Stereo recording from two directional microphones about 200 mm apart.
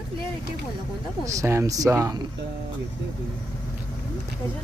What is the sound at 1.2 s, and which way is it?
Speech, 15° right (ahead or behind).